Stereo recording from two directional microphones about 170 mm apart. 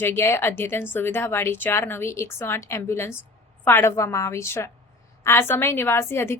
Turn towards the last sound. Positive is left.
turn(degrees=15)  # may be behind; listen again after turning